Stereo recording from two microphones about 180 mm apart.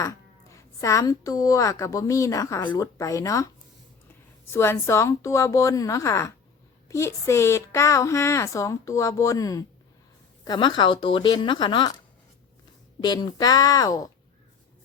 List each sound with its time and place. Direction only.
0.0 s speech: 20° left (ahead or behind)
13.0 s speech: 25° left (ahead or behind)